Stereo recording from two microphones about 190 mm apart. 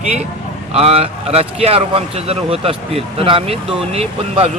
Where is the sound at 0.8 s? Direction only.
30° right (ahead or behind).